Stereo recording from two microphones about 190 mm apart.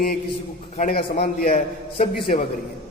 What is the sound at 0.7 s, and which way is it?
A man's voice, 50° left (ahead or behind).